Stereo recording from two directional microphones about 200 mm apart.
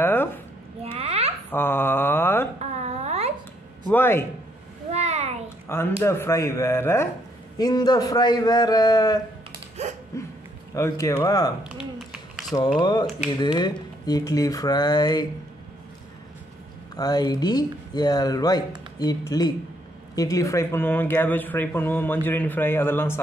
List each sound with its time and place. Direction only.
0.0 s a sound: 10° left (ahead or behind)
0.9 s babbling: 30° right (ahead or behind)
1.5 s mantra: 10° left (ahead or behind)
2.6 s a sound: 35° right (ahead or behind)
3.9 s speech: 10° left (ahead or behind)
4.9 s a sound: 35° right (ahead or behind)
5.7 s a man's voice: 15° left (ahead or behind)
10.1 s hiccup: 15° left (ahead or behind)
10.7 s speech: 15° left (ahead or behind)
11.8 s a sound: centre (ahead or behind)
12.5 s a man's voice: 20° left (ahead or behind)
16.9 s a man's voice: 20° left (ahead or behind)